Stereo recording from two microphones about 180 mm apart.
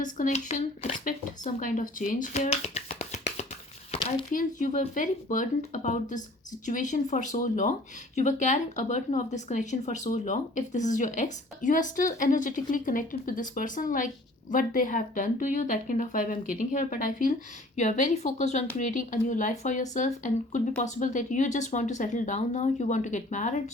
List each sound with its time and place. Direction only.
0.0 s speech: 45° left (ahead or behind)